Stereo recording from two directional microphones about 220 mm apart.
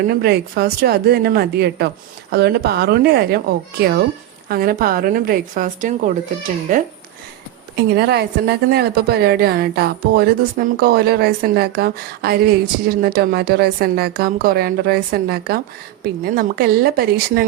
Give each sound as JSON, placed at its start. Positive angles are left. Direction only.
{"t": 0.2, "sound": "a woman's voice", "side_deg": -45}
{"t": 7.9, "sound": "a woman's voice", "side_deg": -50}